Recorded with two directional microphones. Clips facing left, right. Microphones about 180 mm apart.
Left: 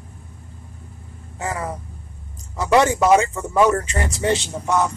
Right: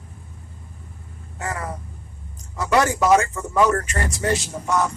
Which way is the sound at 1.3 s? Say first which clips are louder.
Left 3 dB; 25° left (ahead or behind).